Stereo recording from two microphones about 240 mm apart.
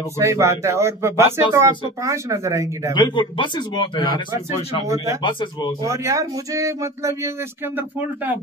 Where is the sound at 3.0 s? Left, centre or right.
Centre.